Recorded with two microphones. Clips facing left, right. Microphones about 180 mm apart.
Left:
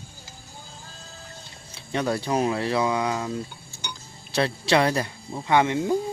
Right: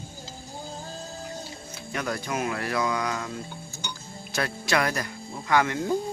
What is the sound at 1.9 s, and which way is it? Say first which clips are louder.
Speech: left 6 dB; 30° left (ahead or behind).